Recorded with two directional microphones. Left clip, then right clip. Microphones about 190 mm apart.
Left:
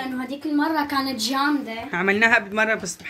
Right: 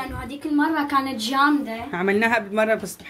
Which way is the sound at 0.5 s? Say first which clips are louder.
Right 2 dB; 25° left (ahead or behind).